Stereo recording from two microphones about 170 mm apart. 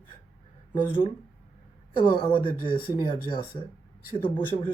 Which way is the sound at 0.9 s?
30° left (ahead or behind).